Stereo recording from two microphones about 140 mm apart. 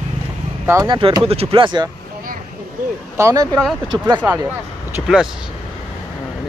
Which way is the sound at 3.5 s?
Centre (ahead or behind).